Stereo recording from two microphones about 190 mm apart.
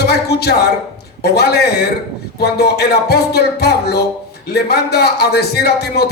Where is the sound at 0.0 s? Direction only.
60° left (ahead or behind).